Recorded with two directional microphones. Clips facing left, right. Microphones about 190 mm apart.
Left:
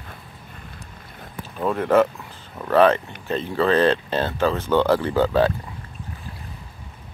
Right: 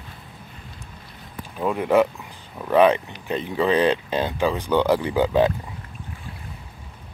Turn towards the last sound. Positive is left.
turn(degrees=-15)  # may be behind; listen again after turning